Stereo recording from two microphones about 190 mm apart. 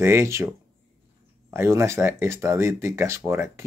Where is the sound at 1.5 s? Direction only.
15° right (ahead or behind).